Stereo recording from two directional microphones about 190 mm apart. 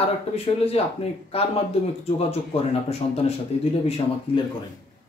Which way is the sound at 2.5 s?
35° left (ahead or behind).